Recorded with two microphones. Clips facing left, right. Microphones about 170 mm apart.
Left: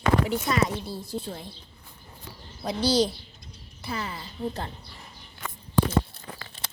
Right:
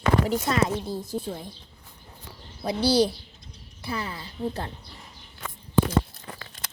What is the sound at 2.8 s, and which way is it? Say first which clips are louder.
A woman's voice: right 2 dB; 60° right (ahead or behind).